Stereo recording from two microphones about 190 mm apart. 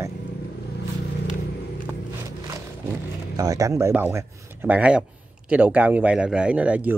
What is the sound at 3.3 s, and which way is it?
Speech, 15° right (ahead or behind).